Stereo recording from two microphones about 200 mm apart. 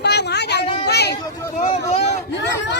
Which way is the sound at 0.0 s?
55° left (ahead or behind).